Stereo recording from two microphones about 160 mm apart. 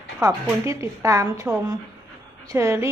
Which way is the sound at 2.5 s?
20° right (ahead or behind).